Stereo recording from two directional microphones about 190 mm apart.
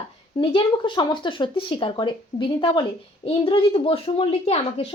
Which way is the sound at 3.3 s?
30° left (ahead or behind).